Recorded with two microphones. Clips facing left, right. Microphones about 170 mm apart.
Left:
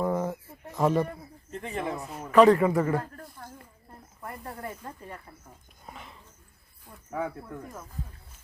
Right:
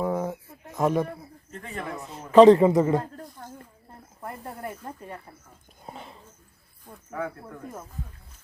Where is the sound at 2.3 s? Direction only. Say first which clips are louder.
Right 5 dB; 25° right (ahead or behind).